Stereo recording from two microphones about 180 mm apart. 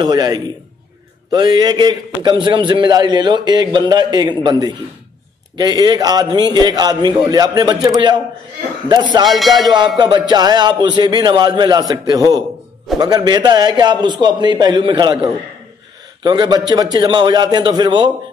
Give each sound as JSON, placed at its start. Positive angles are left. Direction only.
{"t": 0.0, "sound": "a man's voice", "side_deg": -20}
{"t": 9.6, "sound": "a man's voice", "side_deg": -25}